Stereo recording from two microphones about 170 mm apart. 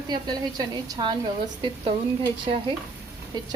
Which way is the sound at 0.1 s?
25° right (ahead or behind).